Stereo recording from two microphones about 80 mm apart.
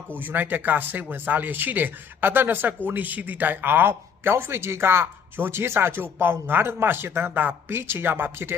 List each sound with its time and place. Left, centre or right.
0.2 s speech: right